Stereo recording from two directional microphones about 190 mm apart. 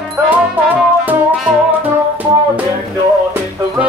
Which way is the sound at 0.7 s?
10° right (ahead or behind).